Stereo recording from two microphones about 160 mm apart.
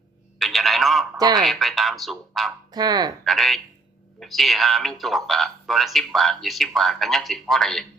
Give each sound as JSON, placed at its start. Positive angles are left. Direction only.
{"t": 0.3, "sound": "a man's voice", "side_deg": 0}
{"t": 2.7, "sound": "speech", "side_deg": -25}
{"t": 3.2, "sound": "a man's voice", "side_deg": 0}